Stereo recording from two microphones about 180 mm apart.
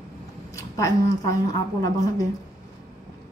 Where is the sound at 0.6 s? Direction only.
20° left (ahead or behind).